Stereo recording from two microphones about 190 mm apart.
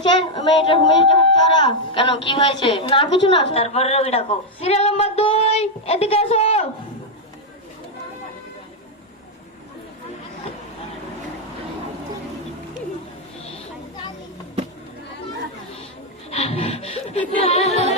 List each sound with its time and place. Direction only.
0.0 s a woman's voice: 25° left (ahead or behind)
16.3 s a woman's voice: 30° left (ahead or behind)